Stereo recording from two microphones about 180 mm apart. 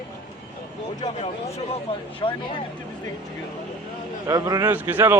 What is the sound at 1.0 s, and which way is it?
Speech, 35° left (ahead or behind).